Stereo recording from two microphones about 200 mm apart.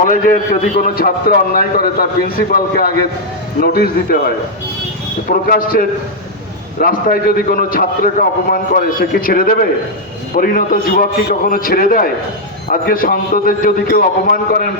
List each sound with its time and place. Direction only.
0.0 s a man's voice: 40° left (ahead or behind)
5.5 s a man's voice: 45° left (ahead or behind)